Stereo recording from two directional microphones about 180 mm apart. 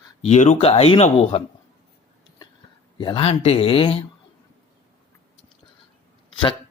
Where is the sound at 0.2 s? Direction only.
40° left (ahead or behind).